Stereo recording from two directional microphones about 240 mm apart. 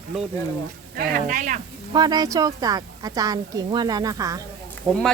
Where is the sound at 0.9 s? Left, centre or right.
Right.